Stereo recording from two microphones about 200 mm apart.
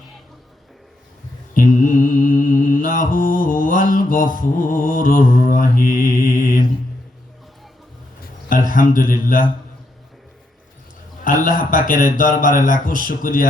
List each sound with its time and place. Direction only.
1.8 s mantra: 40° left (ahead or behind)
8.2 s a sound: 45° left (ahead or behind)
8.7 s mantra: 45° left (ahead or behind)
11.2 s mantra: 45° left (ahead or behind)